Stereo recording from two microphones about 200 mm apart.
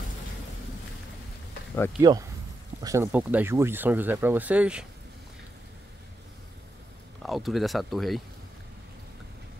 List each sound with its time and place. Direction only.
2.0 s speech: 20° right (ahead or behind)
7.2 s speech: centre (ahead or behind)